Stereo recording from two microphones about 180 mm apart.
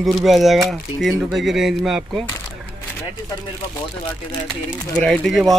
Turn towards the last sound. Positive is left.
turn(degrees=0)  # may be behind; listen again after turning